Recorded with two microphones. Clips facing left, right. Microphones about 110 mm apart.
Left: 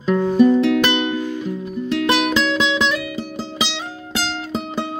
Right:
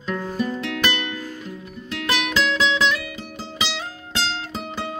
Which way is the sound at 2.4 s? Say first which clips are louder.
Left 2 dB; 25° left (ahead or behind).